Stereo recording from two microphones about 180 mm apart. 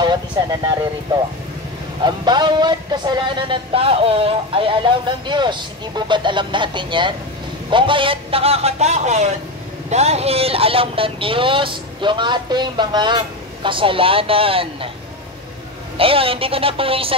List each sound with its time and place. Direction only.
0.0 s speech: 25° right (ahead or behind)
2.0 s a man's voice: 25° right (ahead or behind)
16.0 s a man's voice: 30° right (ahead or behind)